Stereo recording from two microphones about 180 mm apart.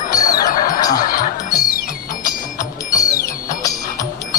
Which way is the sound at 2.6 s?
20° left (ahead or behind).